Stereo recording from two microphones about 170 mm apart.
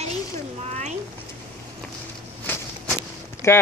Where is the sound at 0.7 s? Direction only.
45° right (ahead or behind).